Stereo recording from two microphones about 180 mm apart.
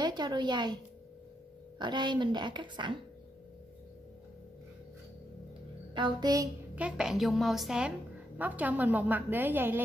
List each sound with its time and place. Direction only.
0.0 s a woman's voice: 25° right (ahead or behind)
1.8 s a woman's voice: 25° right (ahead or behind)
5.9 s a woman's voice: 25° right (ahead or behind)
6.7 s a woman's voice: 5° right (ahead or behind)